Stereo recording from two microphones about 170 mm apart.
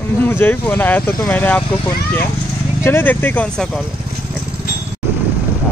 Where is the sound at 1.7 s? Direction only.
25° left (ahead or behind).